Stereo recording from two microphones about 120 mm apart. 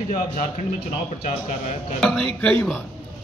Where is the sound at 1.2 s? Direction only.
75° left (ahead or behind).